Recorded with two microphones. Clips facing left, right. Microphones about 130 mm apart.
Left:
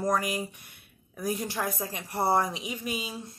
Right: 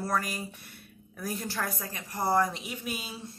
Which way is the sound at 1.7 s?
25° left (ahead or behind).